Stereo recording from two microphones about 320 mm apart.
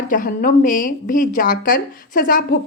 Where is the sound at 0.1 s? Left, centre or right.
Left.